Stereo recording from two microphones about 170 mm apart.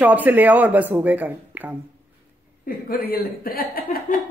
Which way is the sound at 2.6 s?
60° left (ahead or behind).